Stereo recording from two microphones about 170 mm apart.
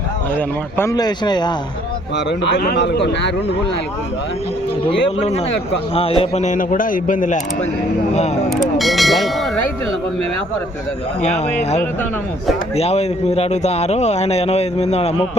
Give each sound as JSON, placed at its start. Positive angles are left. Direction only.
{"t": 0.3, "sound": "speech", "side_deg": 15}
{"t": 2.1, "sound": "speech", "side_deg": 90}
{"t": 4.9, "sound": "speech", "side_deg": 35}
{"t": 8.4, "sound": "speech", "side_deg": 0}
{"t": 11.2, "sound": "speech", "side_deg": 40}